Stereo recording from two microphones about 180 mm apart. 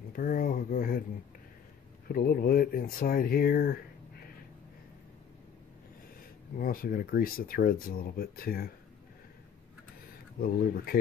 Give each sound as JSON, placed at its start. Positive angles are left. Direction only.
{"t": 0.1, "sound": "a sound", "side_deg": 50}
{"t": 2.1, "sound": "speech", "side_deg": 55}
{"t": 6.6, "sound": "speech", "side_deg": 55}
{"t": 10.4, "sound": "speech", "side_deg": 55}